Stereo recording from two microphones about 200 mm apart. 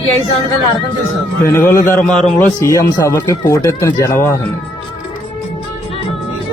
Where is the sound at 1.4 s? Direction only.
15° left (ahead or behind).